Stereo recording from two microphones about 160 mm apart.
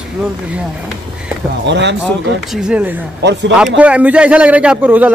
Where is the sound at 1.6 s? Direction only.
90° right.